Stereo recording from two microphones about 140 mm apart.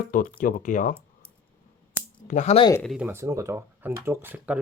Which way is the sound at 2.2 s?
60° left (ahead or behind).